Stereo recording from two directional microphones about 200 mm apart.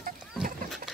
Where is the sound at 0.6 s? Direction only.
Centre (ahead or behind).